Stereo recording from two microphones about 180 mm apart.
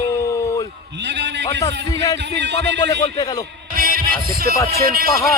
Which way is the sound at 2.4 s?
75° right (ahead or behind).